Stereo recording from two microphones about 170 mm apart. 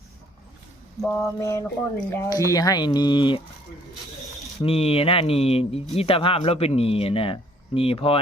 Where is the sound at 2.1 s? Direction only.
20° left (ahead or behind).